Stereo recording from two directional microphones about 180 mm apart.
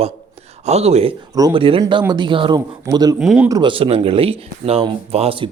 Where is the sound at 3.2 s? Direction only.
5° right (ahead or behind).